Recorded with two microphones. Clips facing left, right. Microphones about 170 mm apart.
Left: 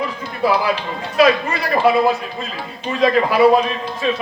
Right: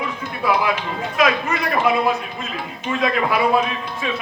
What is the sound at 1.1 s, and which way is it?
A man's voice, 30° left (ahead or behind).